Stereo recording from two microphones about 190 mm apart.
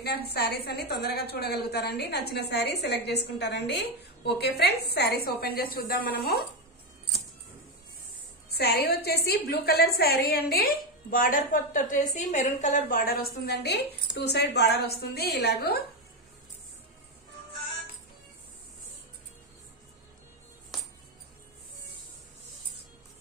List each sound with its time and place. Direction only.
0.0 s a woman's voice: 55° left (ahead or behind)
8.5 s a woman's voice: 55° left (ahead or behind)
13.5 s a woman's voice: 60° left (ahead or behind)